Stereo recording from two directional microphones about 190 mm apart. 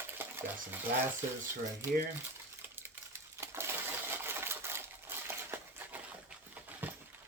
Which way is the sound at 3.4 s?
15° right (ahead or behind).